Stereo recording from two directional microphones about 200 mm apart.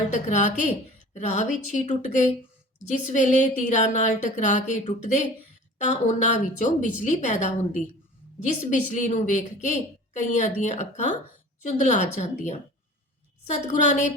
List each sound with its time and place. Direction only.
0.1 s a woman's voice: 35° left (ahead or behind)
13.7 s a woman's voice: 35° left (ahead or behind)